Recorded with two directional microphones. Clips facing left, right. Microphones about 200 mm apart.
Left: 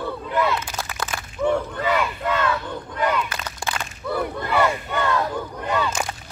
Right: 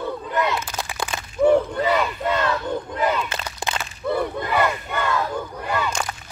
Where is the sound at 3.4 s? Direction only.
20° right (ahead or behind).